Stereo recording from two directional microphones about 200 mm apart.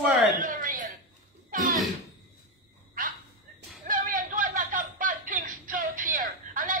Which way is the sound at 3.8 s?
45° right (ahead or behind).